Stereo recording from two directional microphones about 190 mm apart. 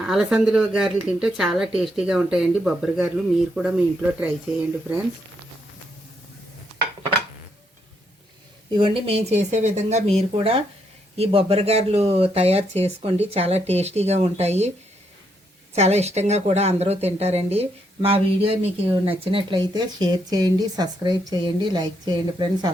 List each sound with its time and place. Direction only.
0.0 s speech: 5° right (ahead or behind)
8.7 s speech: 30° right (ahead or behind)
15.7 s speech: 35° right (ahead or behind)